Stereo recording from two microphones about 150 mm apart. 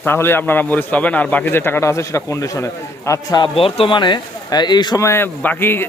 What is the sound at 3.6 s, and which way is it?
A man's voice, 40° left (ahead or behind).